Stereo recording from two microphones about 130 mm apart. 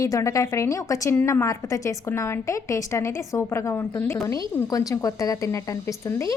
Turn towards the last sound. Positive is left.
turn(degrees=25)  # may be behind; listen again after turning